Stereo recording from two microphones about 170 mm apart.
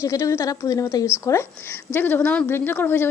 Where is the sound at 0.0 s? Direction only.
15° left (ahead or behind).